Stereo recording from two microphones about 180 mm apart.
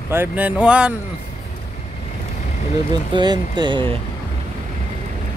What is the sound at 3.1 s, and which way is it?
Speech, 25° right (ahead or behind).